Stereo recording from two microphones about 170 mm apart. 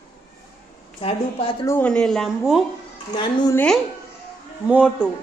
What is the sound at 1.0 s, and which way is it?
Speech, 30° left (ahead or behind).